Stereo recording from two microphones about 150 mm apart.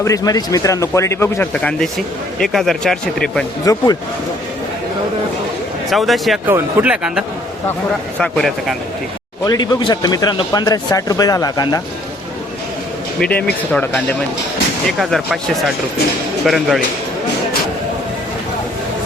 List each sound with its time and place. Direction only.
0.0 s speech: 25° left (ahead or behind); by 3.4 s 5° left (ahead or behind)
3.7 s speech: 25° left (ahead or behind)
5.9 s speech: centre (ahead or behind)
9.4 s speech: 25° left (ahead or behind)
13.1 s speech: 5° left (ahead or behind)